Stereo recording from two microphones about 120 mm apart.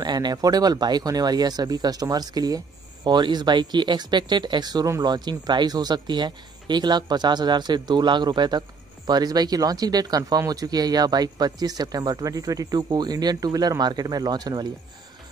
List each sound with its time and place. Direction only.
0.0 s speech: 35° right (ahead or behind)